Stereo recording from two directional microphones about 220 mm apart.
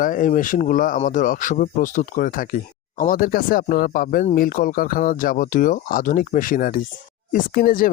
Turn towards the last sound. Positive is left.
turn(degrees=40)  # may be behind; listen again after turning